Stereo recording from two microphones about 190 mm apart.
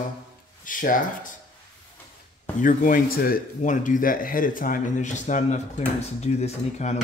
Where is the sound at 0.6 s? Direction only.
45° left (ahead or behind).